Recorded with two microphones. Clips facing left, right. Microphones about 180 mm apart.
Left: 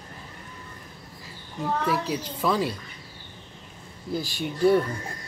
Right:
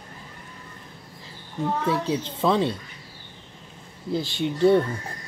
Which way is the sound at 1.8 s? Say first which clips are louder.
Right 2 dB; 25° right (ahead or behind).